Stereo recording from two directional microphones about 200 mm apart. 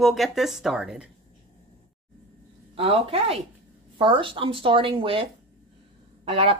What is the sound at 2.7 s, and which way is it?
Speech, 30° right (ahead or behind).